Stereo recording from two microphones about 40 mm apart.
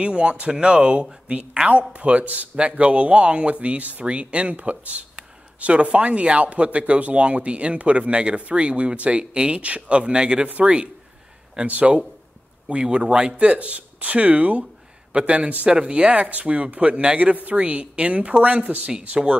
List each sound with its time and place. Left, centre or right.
0.0 s speech: right
11.6 s speech: right
15.1 s speech: right